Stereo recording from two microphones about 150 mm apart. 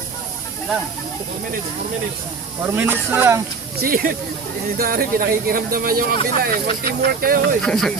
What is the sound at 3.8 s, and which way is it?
Speech, 75° right (ahead or behind).